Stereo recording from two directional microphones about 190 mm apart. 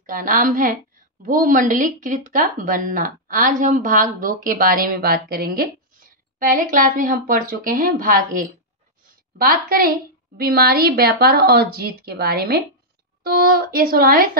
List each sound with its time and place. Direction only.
0.0 s a woman's voice: 45° right (ahead or behind)